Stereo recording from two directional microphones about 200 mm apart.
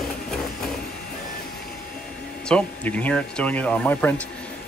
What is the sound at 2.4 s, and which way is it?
Speech, 5° left (ahead or behind).